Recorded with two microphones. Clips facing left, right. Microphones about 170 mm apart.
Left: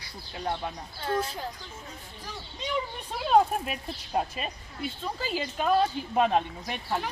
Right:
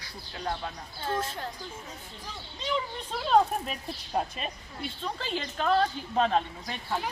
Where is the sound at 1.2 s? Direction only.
Centre (ahead or behind).